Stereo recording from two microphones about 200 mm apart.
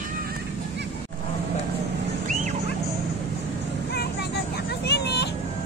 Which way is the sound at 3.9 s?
55° left (ahead or behind).